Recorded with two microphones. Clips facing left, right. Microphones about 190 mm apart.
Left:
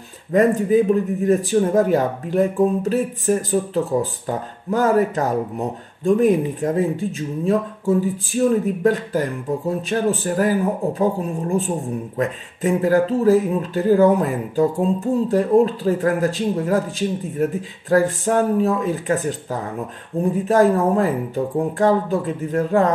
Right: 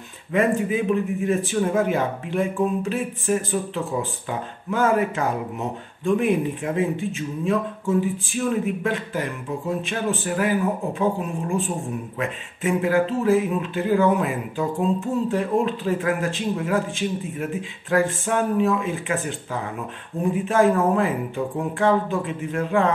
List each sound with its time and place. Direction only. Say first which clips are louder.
0.3 s speech: left 5 dB; 40° left (ahead or behind)